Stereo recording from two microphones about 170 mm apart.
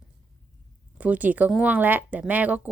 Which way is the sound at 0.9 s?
10° right (ahead or behind).